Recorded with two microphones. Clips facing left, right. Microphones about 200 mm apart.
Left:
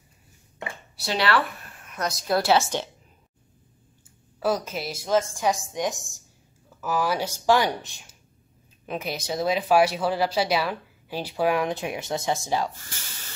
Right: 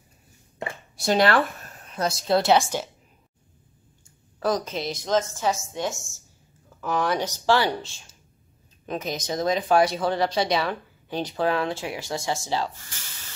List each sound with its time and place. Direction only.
0.9 s a sound: 45° right (ahead or behind)
1.9 s a woman's voice: 30° right (ahead or behind); by 2.9 s 10° right (ahead or behind)
4.4 s speech: 10° left (ahead or behind)
6.8 s speech: 5° left (ahead or behind)